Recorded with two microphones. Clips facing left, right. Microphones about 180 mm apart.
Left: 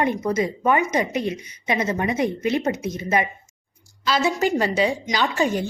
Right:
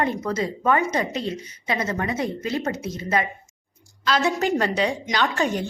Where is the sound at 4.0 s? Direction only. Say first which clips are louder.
Left 1 dB; 5° left (ahead or behind).